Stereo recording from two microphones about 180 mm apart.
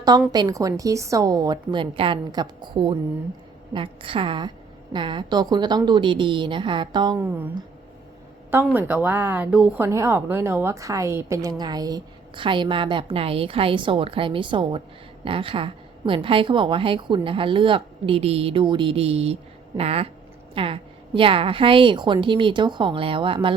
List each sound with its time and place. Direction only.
0.3 s speech: 20° right (ahead or behind)
7.2 s speech: 10° right (ahead or behind); by 23.6 s 30° right (ahead or behind)